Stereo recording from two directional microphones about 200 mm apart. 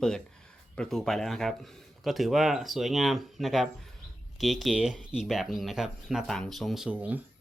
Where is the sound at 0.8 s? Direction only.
Centre (ahead or behind).